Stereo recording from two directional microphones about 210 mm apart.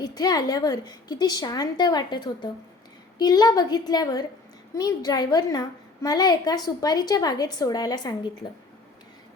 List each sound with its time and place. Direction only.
0.0 s a woman's voice: 20° left (ahead or behind)